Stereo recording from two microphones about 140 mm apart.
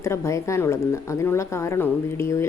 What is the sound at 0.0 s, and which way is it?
Speech, 20° left (ahead or behind).